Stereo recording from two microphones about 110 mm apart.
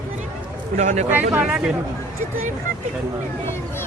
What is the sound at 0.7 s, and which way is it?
Speech, 90° right.